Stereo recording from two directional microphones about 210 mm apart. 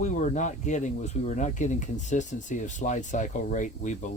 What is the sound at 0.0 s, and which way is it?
Speech, 35° left (ahead or behind).